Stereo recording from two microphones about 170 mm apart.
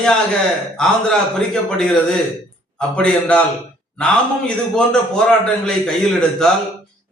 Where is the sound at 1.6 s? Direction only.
5° left (ahead or behind).